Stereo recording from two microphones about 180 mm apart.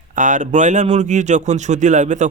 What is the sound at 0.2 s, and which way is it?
Speech, 45° right (ahead or behind).